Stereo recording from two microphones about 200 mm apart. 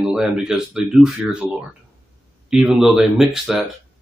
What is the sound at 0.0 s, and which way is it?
Speech, 5° right (ahead or behind).